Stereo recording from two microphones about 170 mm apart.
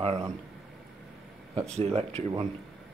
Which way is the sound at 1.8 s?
35° right (ahead or behind).